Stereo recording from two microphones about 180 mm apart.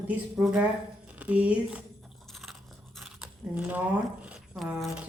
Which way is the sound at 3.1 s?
5° right (ahead or behind).